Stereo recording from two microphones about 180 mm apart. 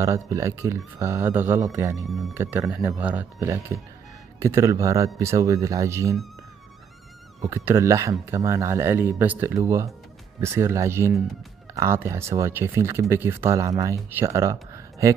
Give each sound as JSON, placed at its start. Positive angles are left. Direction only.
{"t": 0.0, "sound": "speech", "side_deg": -15}
{"t": 2.0, "sound": "speech", "side_deg": 0}
{"t": 2.3, "sound": "speech", "side_deg": -15}
{"t": 7.4, "sound": "speech", "side_deg": -15}